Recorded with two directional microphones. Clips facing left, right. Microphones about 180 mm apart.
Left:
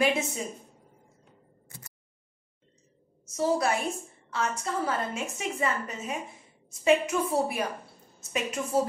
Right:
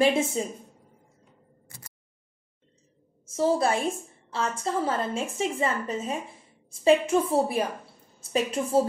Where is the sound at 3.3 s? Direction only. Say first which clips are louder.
Right 3 dB; 30° right (ahead or behind).